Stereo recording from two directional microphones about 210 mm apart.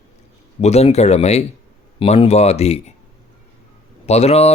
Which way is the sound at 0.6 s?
30° left (ahead or behind).